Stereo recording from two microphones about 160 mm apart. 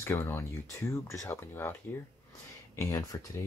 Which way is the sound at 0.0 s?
15° left (ahead or behind).